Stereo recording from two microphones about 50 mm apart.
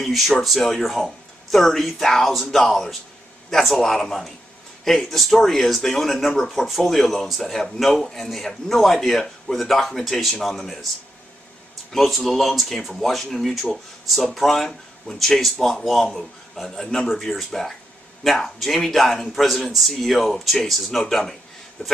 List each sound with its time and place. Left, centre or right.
0.0 s a sound: centre
0.4 s speech: centre
11.9 s speech: centre